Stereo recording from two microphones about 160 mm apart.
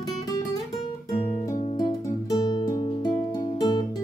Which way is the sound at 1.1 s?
25° left (ahead or behind).